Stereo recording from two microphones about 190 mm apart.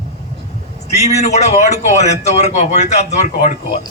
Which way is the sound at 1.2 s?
35° left (ahead or behind).